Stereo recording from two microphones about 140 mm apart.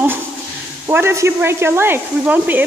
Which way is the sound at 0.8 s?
20° right (ahead or behind).